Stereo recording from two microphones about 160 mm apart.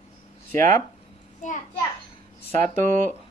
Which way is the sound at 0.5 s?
55° right (ahead or behind).